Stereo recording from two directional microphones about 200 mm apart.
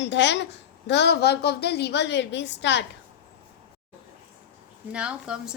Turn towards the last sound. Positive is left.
turn(degrees=-5)  # may be behind; listen again after turning